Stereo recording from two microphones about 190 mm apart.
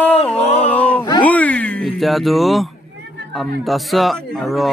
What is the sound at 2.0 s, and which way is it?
Speech, centre (ahead or behind).